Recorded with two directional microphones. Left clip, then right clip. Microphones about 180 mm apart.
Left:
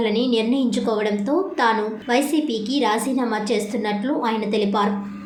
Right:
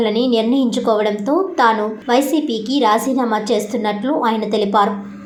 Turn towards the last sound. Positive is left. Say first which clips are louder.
# right 5 dB
turn(degrees=-20)  # may be behind; listen again after turning